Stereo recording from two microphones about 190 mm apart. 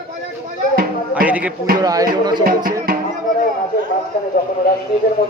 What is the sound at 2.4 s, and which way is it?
Speech, 45° right (ahead or behind).